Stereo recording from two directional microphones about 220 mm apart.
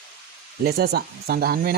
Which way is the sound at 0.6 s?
45° right (ahead or behind).